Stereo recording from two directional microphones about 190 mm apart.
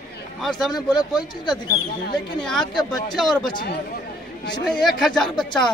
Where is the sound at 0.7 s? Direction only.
20° left (ahead or behind).